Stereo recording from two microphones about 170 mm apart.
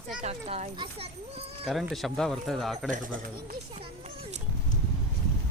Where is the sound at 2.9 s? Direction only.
55° right (ahead or behind).